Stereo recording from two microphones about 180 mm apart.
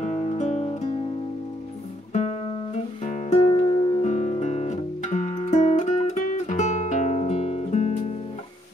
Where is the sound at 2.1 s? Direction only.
40° left (ahead or behind).